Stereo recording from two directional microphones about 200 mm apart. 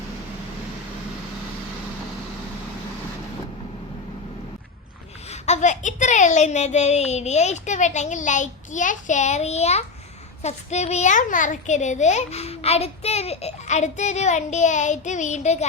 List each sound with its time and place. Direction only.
5.3 s a child's voice: 35° left (ahead or behind)